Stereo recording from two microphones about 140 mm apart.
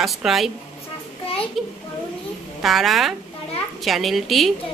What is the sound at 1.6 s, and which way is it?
A woman's voice, centre (ahead or behind).